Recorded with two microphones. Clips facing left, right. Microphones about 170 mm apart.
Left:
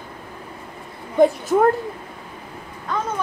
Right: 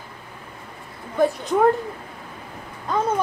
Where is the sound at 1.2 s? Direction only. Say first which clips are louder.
Left 5 dB; 20° left (ahead or behind).